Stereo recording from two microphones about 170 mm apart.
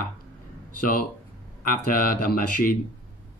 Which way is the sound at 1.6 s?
55° left (ahead or behind).